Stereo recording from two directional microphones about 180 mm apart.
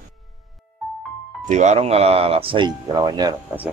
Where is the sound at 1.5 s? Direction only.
40° right (ahead or behind); by 3.3 s 20° right (ahead or behind).